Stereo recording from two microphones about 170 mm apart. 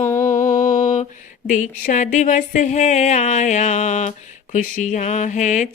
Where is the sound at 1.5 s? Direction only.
50° left (ahead or behind).